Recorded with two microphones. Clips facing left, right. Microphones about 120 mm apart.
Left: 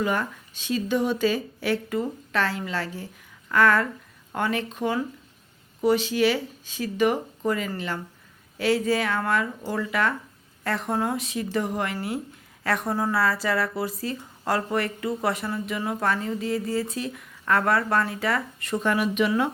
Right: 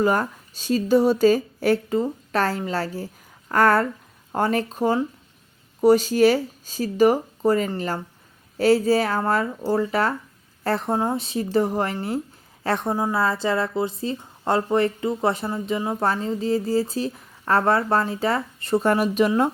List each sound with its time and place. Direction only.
0.0 s speech: 40° right (ahead or behind)